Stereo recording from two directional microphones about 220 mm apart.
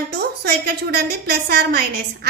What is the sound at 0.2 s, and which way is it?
A woman's voice, 45° right (ahead or behind).